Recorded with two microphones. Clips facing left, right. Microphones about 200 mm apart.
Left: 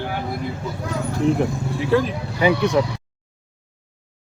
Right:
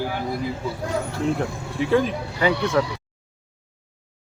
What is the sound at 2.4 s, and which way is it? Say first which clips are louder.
Speech: left 3 dB; 15° left (ahead or behind).